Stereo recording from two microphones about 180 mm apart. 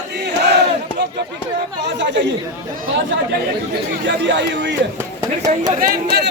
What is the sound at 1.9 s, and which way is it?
Chatter, 75° right (ahead or behind).